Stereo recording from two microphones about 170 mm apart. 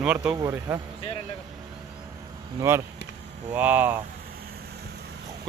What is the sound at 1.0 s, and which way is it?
Speech, 35° left (ahead or behind).